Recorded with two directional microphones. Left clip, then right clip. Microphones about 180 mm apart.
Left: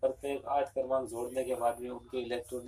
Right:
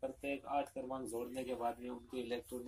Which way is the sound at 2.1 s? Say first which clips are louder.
Left 6 dB; 20° right (ahead or behind).